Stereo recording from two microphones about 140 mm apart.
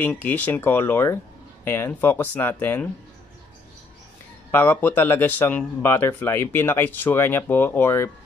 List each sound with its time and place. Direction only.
0.0 s speech: 10° left (ahead or behind)
4.5 s speech: 15° left (ahead or behind)